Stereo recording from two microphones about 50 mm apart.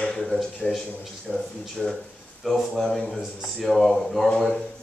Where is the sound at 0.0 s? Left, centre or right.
Centre.